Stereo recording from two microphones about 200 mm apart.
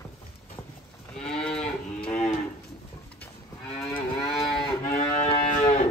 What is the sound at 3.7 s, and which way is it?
Moo, 5° left (ahead or behind).